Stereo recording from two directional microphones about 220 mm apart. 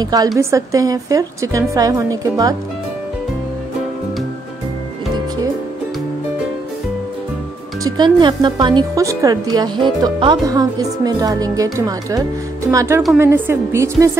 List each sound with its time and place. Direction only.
0.0 s speech: 15° right (ahead or behind)
7.8 s speech: 20° right (ahead or behind)